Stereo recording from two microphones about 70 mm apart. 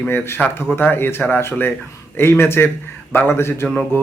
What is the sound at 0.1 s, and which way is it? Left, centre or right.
Speech, left.